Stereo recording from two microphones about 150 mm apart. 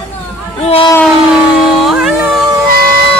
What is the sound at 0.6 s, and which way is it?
Speech, 45° left (ahead or behind).